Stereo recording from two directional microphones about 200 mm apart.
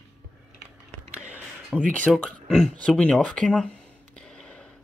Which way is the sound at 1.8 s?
5° left (ahead or behind).